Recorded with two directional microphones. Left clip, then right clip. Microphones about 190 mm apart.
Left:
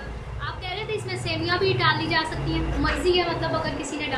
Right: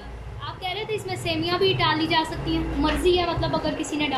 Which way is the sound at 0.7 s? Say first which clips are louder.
Right 2 dB; 10° right (ahead or behind).